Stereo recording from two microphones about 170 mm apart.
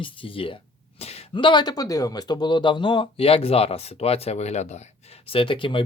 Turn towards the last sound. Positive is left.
turn(degrees=30)  # may be behind; listen again after turning